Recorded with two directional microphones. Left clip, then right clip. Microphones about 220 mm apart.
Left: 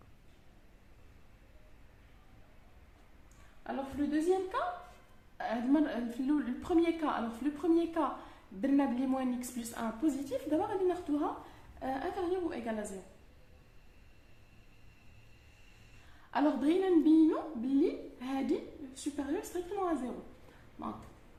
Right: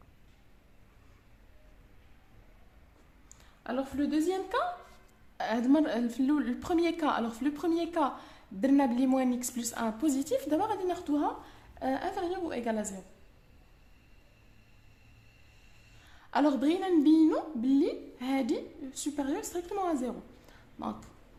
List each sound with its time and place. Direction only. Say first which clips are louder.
3.2 s a woman's voice: right 3 dB; 50° right (ahead or behind)
16.3 s a woman's voice: right 3 dB; 35° right (ahead or behind)